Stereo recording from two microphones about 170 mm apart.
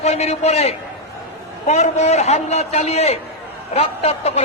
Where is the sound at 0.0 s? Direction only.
40° left (ahead or behind).